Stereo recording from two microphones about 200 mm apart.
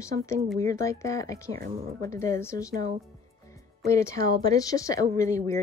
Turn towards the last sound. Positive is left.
turn(degrees=15)  # may be behind; listen again after turning